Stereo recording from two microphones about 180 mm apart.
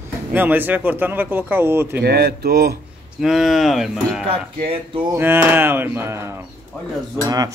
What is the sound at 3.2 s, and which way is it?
Speech, centre (ahead or behind).